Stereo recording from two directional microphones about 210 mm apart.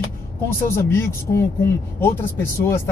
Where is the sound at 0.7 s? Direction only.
10° left (ahead or behind).